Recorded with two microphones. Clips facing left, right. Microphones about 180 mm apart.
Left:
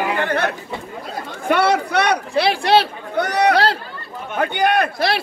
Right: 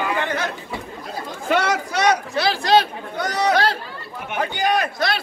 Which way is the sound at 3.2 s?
60° left (ahead or behind).